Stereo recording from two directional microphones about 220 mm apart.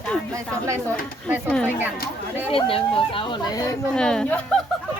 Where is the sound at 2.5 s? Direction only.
25° left (ahead or behind).